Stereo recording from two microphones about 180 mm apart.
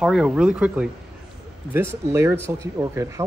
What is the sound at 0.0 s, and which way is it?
A woman's voice, 5° right (ahead or behind).